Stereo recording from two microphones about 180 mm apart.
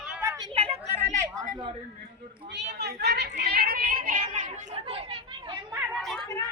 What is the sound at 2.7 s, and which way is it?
A woman's voice, 65° right (ahead or behind).